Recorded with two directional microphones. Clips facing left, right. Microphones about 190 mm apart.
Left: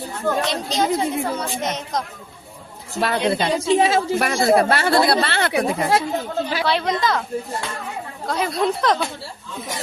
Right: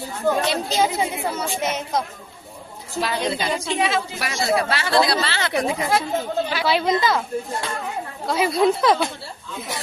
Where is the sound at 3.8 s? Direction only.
45° left (ahead or behind).